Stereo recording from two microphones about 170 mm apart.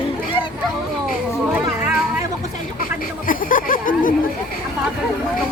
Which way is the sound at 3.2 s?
55° left (ahead or behind).